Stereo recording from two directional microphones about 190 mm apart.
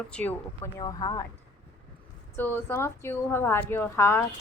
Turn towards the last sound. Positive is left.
turn(degrees=15)  # may be behind; listen again after turning